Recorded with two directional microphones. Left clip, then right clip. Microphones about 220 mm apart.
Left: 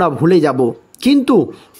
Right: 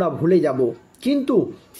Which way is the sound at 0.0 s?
50° left (ahead or behind).